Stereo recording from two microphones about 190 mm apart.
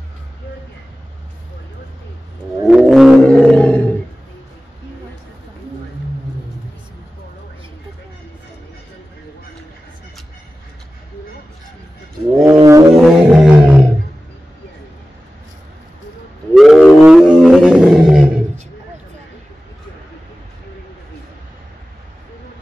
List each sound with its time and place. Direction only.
2.6 s roar: centre (ahead or behind)
12.4 s brass instrument: 15° right (ahead or behind)
12.9 s roar: centre (ahead or behind)
16.5 s wild animals: centre (ahead or behind)